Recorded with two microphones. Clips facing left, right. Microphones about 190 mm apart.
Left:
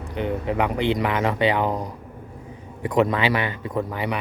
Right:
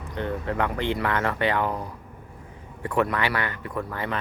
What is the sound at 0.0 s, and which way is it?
Speech, 15° left (ahead or behind).